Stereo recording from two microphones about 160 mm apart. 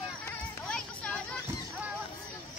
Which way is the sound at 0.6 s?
5° left (ahead or behind).